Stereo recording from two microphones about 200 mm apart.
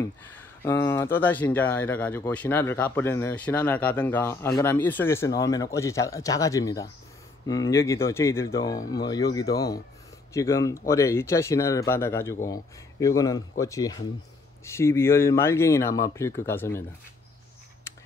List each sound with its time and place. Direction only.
0.0 s speech: 10° left (ahead or behind)